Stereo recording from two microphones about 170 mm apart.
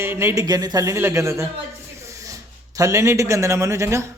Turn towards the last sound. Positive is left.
turn(degrees=-15)  # may be behind; listen again after turning